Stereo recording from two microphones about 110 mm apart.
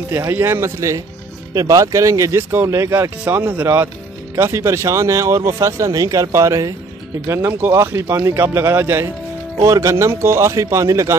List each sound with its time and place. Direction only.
0.1 s speech: 20° right (ahead or behind)